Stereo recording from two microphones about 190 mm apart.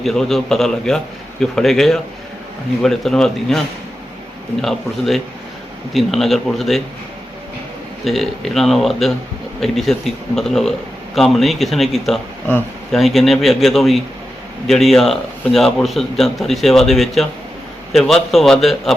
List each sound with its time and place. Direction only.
0.0 s a man's voice: centre (ahead or behind)
4.6 s a man's voice: centre (ahead or behind)
8.0 s a man's voice: centre (ahead or behind)
12.5 s speech: 10° left (ahead or behind)
13.0 s a man's voice: centre (ahead or behind)